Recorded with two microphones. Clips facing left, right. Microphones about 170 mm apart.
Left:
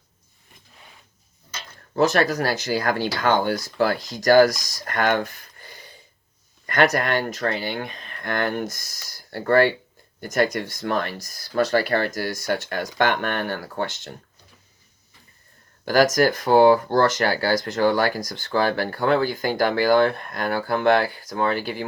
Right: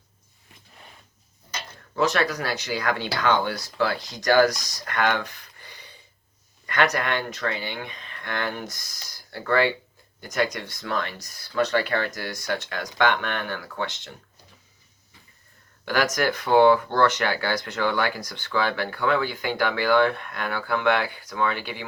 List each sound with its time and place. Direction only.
2.0 s speech: 45° left (ahead or behind)
15.8 s speech: 40° left (ahead or behind)